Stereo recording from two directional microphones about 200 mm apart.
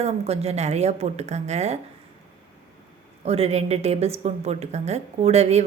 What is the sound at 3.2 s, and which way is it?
A woman's voice, 30° right (ahead or behind).